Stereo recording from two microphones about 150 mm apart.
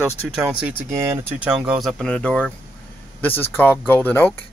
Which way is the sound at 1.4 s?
5° right (ahead or behind).